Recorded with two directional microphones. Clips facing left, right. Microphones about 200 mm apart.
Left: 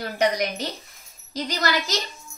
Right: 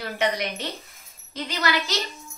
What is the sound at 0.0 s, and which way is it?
A woman's voice, 40° left (ahead or behind).